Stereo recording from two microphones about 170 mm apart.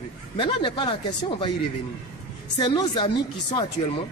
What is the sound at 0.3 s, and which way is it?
Speech, 30° left (ahead or behind).